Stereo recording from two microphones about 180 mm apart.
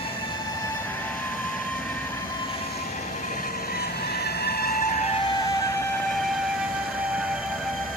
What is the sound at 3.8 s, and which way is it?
Vehicle, 65° left (ahead or behind).